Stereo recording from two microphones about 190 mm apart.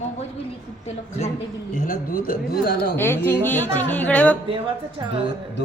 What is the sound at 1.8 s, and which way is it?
Speech, 45° left (ahead or behind).